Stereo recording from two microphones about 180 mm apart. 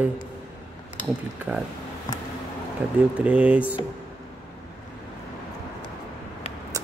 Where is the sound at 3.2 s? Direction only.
10° right (ahead or behind).